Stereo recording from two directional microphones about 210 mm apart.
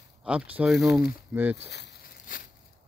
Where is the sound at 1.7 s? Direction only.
45° left (ahead or behind).